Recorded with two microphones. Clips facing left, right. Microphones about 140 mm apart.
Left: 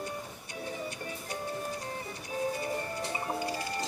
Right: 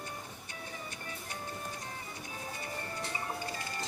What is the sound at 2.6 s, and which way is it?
Music, 30° left (ahead or behind).